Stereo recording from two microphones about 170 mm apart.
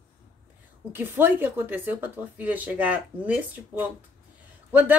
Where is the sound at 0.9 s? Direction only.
10° right (ahead or behind).